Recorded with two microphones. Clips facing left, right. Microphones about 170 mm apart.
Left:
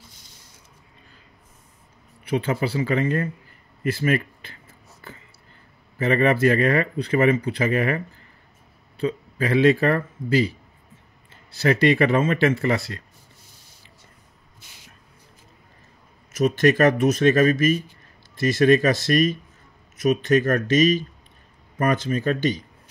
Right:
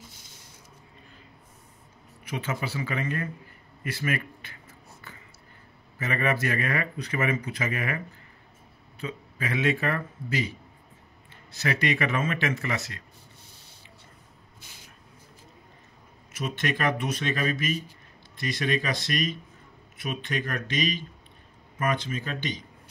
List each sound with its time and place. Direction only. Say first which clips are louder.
2.2 s speech: left 9 dB; 30° left (ahead or behind)
5.9 s speech: left 8 dB; 30° left (ahead or behind)
11.5 s speech: left 9 dB; 35° left (ahead or behind)
16.3 s speech: left 12 dB; 40° left (ahead or behind)